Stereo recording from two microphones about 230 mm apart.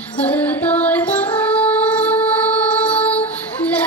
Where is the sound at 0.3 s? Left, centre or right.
Centre.